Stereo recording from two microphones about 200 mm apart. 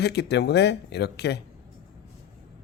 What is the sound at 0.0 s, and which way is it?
Speech, 55° left (ahead or behind).